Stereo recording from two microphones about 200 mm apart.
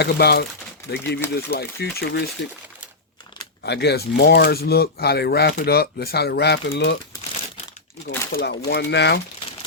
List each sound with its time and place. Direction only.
0.0 s speech: 50° left (ahead or behind)
3.6 s speech: 55° left (ahead or behind)
8.0 s speech: 50° left (ahead or behind)